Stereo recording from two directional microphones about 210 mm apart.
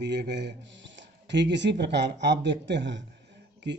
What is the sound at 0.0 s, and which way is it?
Speech, 55° right (ahead or behind).